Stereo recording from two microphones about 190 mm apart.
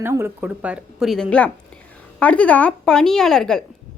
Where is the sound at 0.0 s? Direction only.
10° right (ahead or behind).